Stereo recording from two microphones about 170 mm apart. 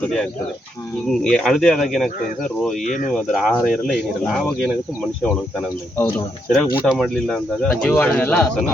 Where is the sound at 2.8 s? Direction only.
50° left (ahead or behind).